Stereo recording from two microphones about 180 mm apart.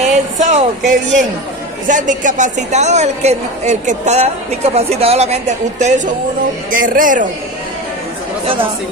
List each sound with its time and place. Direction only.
0.0 s a sound: 40° right (ahead or behind)
1.9 s a woman's voice: 45° right (ahead or behind)
6.7 s speech: 50° right (ahead or behind)